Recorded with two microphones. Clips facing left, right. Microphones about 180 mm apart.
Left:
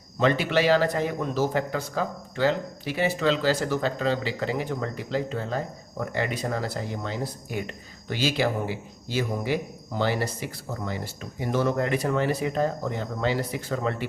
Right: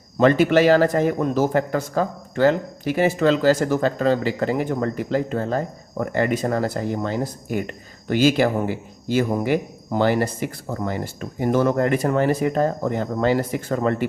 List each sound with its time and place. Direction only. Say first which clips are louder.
0.2 s a man's voice: right 7 dB; 50° right (ahead or behind)